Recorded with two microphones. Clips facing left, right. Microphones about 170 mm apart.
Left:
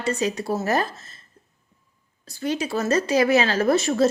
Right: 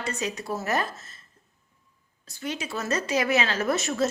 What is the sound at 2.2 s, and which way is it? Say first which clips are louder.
A woman's voice: left 7 dB; 35° left (ahead or behind).